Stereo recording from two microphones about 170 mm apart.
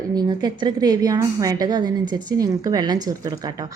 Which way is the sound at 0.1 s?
25° right (ahead or behind).